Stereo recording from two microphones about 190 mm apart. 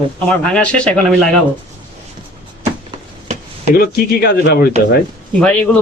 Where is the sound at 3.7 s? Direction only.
50° left (ahead or behind).